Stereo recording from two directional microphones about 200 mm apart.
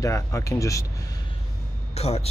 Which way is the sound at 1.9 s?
30° left (ahead or behind).